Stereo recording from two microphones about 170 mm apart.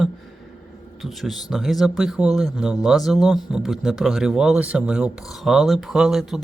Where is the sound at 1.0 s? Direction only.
Centre (ahead or behind).